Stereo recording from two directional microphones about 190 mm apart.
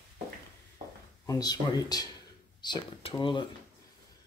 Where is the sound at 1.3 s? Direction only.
20° left (ahead or behind).